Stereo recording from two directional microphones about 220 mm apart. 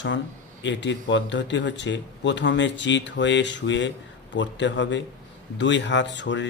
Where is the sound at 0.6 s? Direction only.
55° left (ahead or behind).